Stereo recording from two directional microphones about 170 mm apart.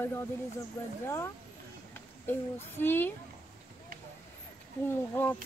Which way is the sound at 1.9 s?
15° left (ahead or behind).